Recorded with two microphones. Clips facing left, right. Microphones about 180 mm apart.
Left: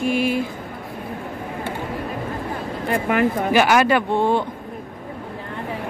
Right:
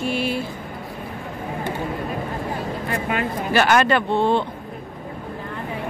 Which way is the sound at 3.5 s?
10° left (ahead or behind).